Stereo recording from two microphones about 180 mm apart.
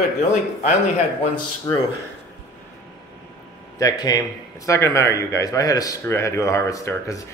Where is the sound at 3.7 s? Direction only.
20° left (ahead or behind).